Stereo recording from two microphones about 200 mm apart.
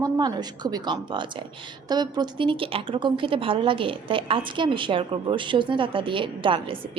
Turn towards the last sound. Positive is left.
turn(degrees=-25)  # may be behind; listen again after turning